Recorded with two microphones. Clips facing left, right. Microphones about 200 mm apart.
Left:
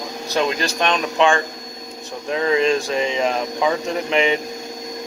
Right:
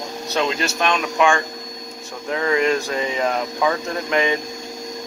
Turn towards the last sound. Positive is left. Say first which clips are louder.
# left 2 dB
turn(degrees=20)  # may be behind; listen again after turning